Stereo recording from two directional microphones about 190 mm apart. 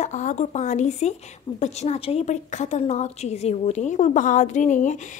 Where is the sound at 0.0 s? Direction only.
40° left (ahead or behind).